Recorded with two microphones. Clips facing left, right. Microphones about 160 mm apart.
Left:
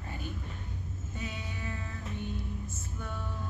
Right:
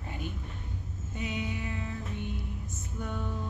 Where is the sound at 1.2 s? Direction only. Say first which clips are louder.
Right 7 dB; 15° right (ahead or behind).